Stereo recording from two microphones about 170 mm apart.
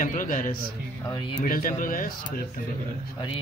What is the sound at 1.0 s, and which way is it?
Speech, 25° left (ahead or behind).